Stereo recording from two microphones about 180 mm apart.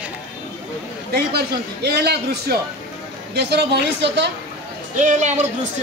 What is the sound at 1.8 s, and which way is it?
A man's voice, 65° right (ahead or behind).